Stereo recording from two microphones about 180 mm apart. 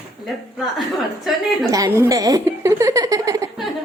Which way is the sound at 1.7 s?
20° right (ahead or behind).